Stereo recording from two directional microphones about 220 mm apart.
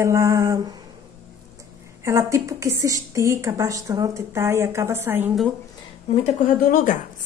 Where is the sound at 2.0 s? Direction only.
15° right (ahead or behind).